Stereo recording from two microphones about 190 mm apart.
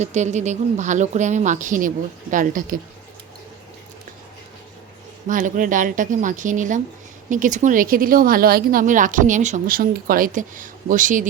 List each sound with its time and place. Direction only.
0.0 s a woman's voice: 35° right (ahead or behind)
5.3 s a woman's voice: 45° right (ahead or behind)